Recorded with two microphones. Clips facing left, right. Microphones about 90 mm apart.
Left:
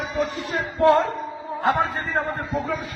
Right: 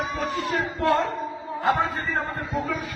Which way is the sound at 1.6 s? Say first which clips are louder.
Left 2 dB; 25° left (ahead or behind).